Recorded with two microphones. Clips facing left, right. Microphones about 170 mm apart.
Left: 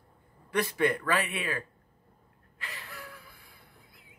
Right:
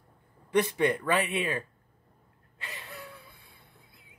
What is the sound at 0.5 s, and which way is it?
Speech, 20° right (ahead or behind).